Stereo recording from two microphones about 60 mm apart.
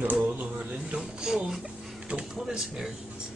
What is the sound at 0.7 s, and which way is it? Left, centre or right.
Speech, centre.